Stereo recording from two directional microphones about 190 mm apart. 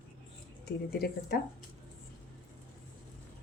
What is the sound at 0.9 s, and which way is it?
Speech, 55° left (ahead or behind).